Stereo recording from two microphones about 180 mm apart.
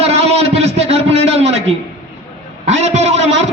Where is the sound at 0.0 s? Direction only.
35° right (ahead or behind).